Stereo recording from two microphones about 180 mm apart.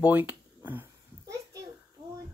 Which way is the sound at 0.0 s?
10° right (ahead or behind).